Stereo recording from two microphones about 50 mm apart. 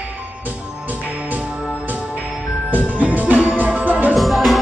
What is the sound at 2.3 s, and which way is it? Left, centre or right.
Music, centre.